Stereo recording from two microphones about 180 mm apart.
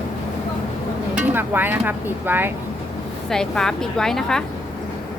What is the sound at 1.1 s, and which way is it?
Speech, 10° right (ahead or behind).